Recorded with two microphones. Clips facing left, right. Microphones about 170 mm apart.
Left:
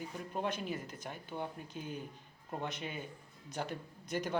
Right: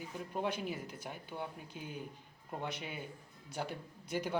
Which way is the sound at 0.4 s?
10° right (ahead or behind).